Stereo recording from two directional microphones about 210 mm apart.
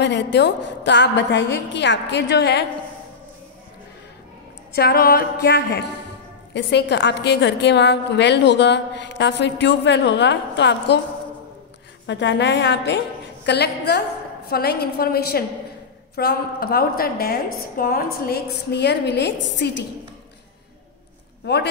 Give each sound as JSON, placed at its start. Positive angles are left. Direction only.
{"t": 0.0, "sound": "a woman's voice", "side_deg": 55}
{"t": 4.7, "sound": "a woman's voice", "side_deg": 45}
{"t": 12.1, "sound": "a woman's voice", "side_deg": 60}